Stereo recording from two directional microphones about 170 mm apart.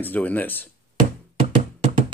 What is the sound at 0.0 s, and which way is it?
Speech, 10° left (ahead or behind).